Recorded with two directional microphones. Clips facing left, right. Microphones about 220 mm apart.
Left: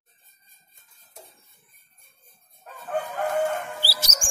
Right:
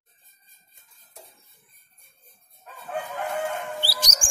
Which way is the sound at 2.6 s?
40° left (ahead or behind).